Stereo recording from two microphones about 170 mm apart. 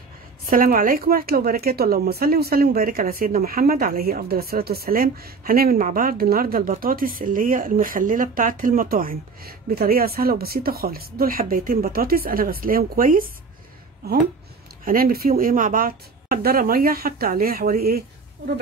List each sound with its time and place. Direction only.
0.5 s speech: 55° right (ahead or behind)
14.9 s speech: 60° right (ahead or behind)